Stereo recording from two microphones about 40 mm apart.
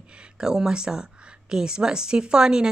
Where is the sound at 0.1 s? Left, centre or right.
Right.